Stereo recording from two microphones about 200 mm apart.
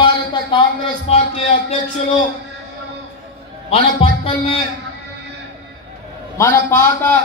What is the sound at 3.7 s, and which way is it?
Speech, 30° left (ahead or behind).